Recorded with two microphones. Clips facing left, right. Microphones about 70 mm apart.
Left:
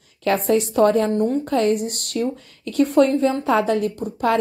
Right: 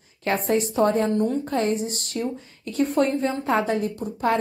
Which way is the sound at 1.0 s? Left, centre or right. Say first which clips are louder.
Left 3 dB; left.